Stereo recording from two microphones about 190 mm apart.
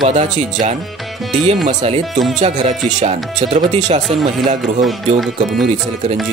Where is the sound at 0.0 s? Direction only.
40° right (ahead or behind).